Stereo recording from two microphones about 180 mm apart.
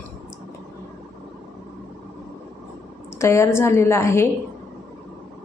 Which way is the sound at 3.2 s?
15° left (ahead or behind).